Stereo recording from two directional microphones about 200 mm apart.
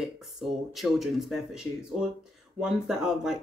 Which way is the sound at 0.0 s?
Centre (ahead or behind).